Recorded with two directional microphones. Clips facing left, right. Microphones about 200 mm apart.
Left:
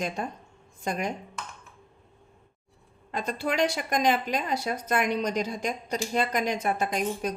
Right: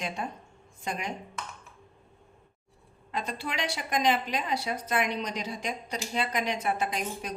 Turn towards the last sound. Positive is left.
turn(degrees=45)  # may be behind; listen again after turning